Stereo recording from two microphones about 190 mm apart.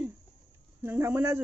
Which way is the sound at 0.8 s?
10° right (ahead or behind).